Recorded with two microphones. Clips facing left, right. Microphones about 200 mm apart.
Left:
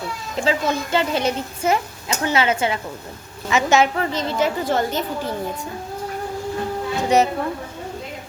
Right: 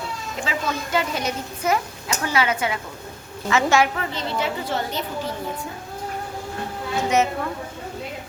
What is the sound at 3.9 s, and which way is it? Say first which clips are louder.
A woman's voice: left 5 dB; 45° left (ahead or behind).